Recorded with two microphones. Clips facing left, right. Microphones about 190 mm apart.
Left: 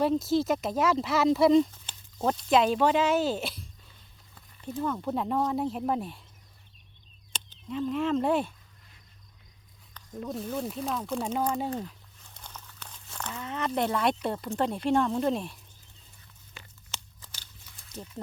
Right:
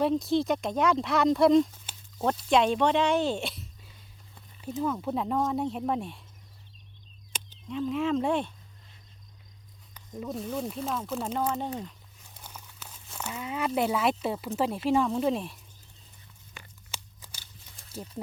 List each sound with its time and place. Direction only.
0.0 s speech: centre (ahead or behind)
7.7 s speech: centre (ahead or behind)
10.1 s speech: centre (ahead or behind)
12.3 s speech: 10° right (ahead or behind)
16.9 s scissors: 10° right (ahead or behind)